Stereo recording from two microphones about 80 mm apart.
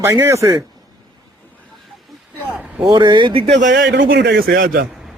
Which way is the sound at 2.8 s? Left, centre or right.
Right.